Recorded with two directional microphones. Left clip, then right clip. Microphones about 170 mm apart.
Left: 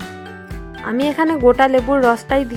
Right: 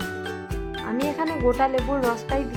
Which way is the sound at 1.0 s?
40° left (ahead or behind).